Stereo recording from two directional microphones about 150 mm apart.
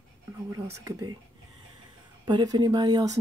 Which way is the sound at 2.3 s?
30° right (ahead or behind).